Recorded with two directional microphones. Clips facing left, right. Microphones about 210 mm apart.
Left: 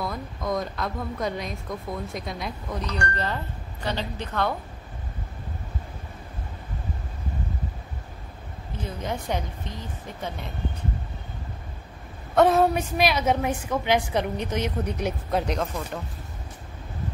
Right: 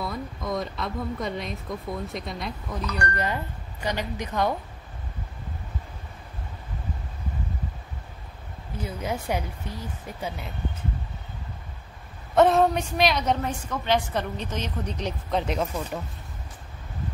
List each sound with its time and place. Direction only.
0.0 s speech: centre (ahead or behind)
2.8 s speech: 30° left (ahead or behind)
3.8 s speech: 15° right (ahead or behind)
8.8 s speech: 10° right (ahead or behind)
12.4 s a woman's voice: centre (ahead or behind)
15.4 s speech: 5° right (ahead or behind)